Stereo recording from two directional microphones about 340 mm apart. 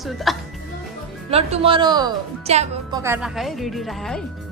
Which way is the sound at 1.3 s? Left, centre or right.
Centre.